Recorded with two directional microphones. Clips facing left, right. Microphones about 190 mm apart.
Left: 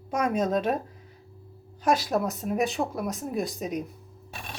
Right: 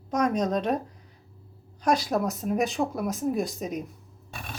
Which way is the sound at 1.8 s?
Centre (ahead or behind).